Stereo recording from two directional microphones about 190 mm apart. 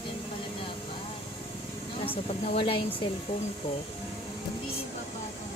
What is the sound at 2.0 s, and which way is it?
Speech, 30° left (ahead or behind).